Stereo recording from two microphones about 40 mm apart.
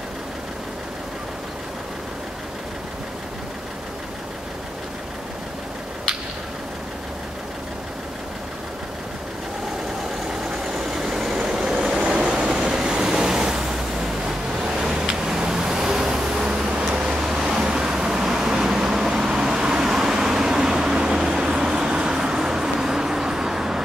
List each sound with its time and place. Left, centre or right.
10.5 s vehicle: centre